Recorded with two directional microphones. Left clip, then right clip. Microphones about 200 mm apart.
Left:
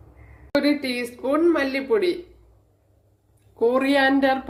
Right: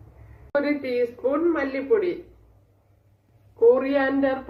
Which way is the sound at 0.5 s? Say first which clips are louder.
Left 1 dB; 55° left (ahead or behind).